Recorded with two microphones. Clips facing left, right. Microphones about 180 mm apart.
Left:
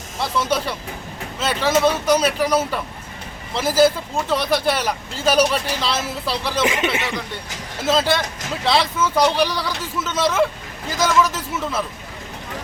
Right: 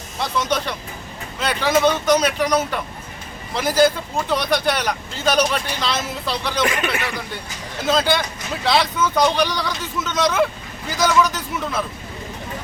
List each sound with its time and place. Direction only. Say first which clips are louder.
0.2 s speech: left 1 dB; 5° left (ahead or behind)
6.7 s speech: left 1 dB; 20° left (ahead or behind)
7.8 s speech: even; 5° left (ahead or behind)